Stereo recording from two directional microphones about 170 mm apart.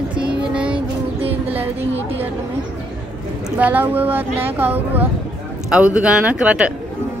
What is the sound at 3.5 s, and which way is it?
Speech, 10° right (ahead or behind).